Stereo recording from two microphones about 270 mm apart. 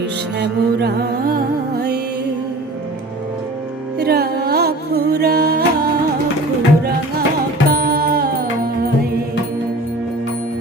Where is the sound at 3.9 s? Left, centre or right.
Right.